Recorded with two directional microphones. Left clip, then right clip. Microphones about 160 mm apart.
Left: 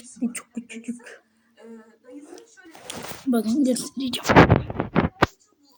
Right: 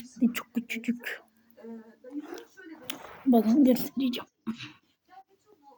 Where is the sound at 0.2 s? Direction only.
35° right (ahead or behind).